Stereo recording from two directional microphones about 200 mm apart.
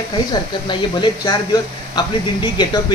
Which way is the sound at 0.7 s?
20° left (ahead or behind).